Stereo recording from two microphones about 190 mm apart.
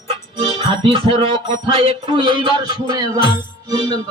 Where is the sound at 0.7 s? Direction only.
25° right (ahead or behind).